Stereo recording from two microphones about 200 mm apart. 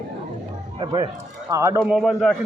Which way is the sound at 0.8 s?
20° right (ahead or behind).